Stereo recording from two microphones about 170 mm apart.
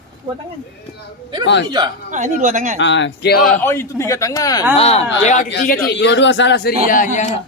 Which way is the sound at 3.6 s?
15° left (ahead or behind).